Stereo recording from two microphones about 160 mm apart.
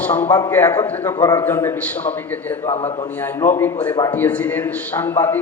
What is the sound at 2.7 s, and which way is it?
Speech, 40° left (ahead or behind).